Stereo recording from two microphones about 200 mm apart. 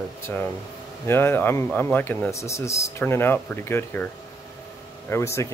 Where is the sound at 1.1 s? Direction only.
10° left (ahead or behind).